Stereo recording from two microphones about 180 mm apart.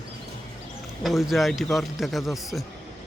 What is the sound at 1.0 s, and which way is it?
A man's voice, centre (ahead or behind).